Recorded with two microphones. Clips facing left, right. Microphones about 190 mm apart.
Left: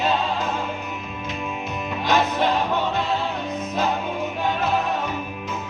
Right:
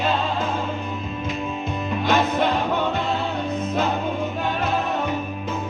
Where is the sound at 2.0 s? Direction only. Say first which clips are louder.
Even; 55° right (ahead or behind).